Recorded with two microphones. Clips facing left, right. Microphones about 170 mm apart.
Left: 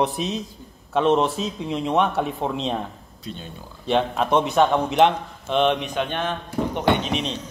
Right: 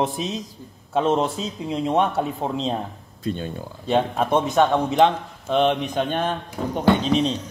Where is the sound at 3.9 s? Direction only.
50° right (ahead or behind).